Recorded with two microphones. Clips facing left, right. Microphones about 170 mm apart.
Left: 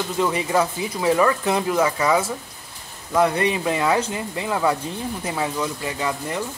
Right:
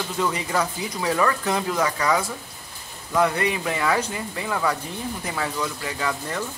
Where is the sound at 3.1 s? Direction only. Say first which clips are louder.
Left 2 dB; 20° left (ahead or behind).